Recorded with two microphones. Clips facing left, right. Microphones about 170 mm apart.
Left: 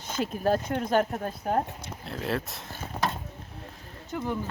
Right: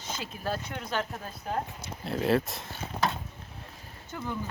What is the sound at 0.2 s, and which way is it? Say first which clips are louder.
Speech: left 10 dB; 45° left (ahead or behind).